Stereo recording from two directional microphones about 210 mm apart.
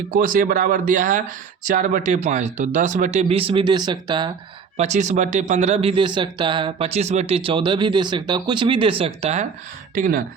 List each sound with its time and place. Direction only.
0.1 s speech: 40° right (ahead or behind); by 4.3 s 20° right (ahead or behind)
4.8 s speech: 35° right (ahead or behind)
9.9 s speech: 40° right (ahead or behind)